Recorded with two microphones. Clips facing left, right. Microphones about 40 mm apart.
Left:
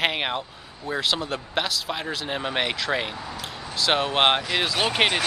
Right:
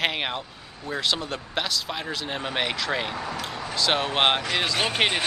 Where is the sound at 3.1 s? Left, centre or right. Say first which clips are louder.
Right 4 dB; right.